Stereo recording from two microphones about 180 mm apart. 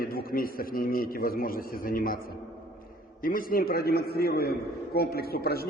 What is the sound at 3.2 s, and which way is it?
A man's voice, 50° left (ahead or behind).